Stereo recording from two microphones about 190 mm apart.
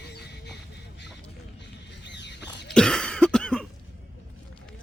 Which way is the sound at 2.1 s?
65° left (ahead or behind).